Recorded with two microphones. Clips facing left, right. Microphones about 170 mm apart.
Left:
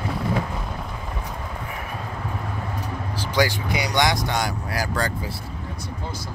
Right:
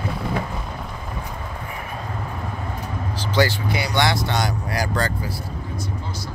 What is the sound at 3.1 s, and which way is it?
Speech, 10° left (ahead or behind).